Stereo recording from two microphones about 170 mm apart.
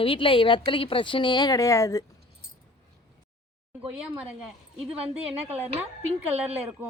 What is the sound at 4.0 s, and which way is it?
Speech, 5° right (ahead or behind).